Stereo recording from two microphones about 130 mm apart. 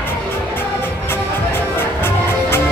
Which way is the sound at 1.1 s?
15° left (ahead or behind).